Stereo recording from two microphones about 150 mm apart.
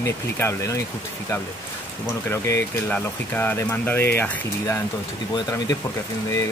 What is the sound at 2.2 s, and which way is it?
Speech, 15° left (ahead or behind).